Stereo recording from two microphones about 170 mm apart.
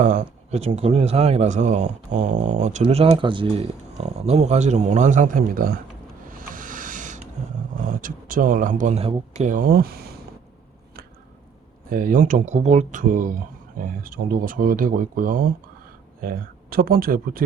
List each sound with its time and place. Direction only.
0.0 s speech: 45° right (ahead or behind)
6.2 s music: 55° right (ahead or behind)
8.0 s speech: 55° right (ahead or behind)
11.9 s speech: 55° right (ahead or behind)